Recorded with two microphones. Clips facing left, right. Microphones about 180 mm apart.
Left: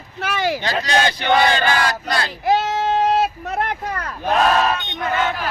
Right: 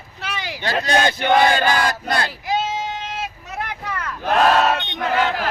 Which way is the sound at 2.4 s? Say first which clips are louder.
Left 5 dB; 60° left (ahead or behind).